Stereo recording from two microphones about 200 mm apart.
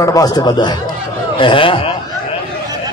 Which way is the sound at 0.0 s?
15° left (ahead or behind).